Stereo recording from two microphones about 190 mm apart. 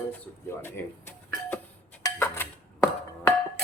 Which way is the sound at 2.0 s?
15° left (ahead or behind).